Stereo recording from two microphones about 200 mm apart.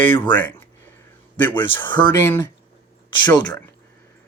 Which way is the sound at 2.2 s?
10° left (ahead or behind).